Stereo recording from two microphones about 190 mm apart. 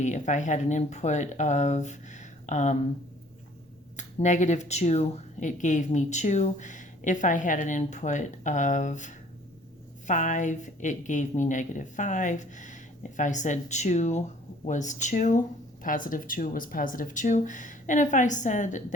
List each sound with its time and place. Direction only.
0.0 s speech: 40° left (ahead or behind)
3.9 s speech: 40° left (ahead or behind)